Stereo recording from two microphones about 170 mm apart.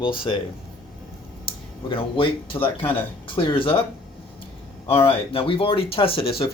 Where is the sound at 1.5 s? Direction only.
30° left (ahead or behind).